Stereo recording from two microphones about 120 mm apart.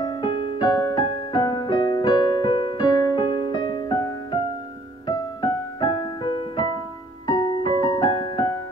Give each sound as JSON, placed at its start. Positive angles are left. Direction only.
{"t": 0.0, "sound": "music", "side_deg": 40}
{"t": 5.0, "sound": "music", "side_deg": 40}